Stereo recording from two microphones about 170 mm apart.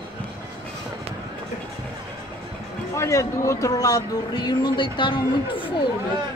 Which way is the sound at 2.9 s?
15° left (ahead or behind).